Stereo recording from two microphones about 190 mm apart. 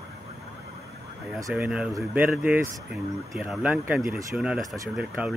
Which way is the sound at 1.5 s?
5° right (ahead or behind).